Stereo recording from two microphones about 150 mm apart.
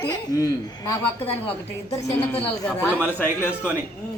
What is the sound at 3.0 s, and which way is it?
Speech, 15° left (ahead or behind).